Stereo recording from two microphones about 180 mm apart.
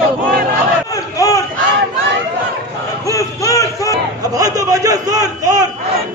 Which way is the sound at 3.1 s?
15° left (ahead or behind).